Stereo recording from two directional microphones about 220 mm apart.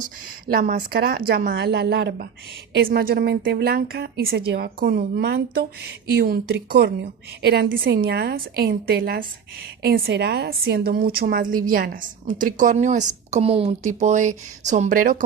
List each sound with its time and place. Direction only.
0.5 s a woman's voice: 35° right (ahead or behind)